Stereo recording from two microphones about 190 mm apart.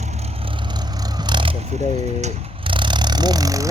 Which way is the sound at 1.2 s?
25° right (ahead or behind).